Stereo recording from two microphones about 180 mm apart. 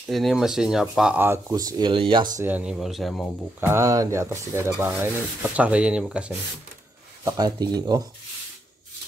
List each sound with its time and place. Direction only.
0.1 s stir: centre (ahead or behind); by 2.2 s 30° right (ahead or behind)
2.3 s speech: 10° right (ahead or behind)
3.6 s stir: 15° right (ahead or behind)
7.2 s speech: 20° right (ahead or behind)